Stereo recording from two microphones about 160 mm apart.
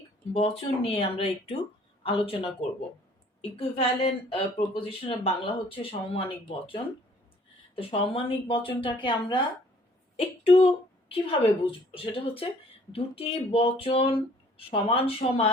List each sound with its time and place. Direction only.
0.3 s a woman's voice: 35° left (ahead or behind)
7.8 s a woman's voice: 35° left (ahead or behind)
10.4 s a woman's voice: 35° left (ahead or behind)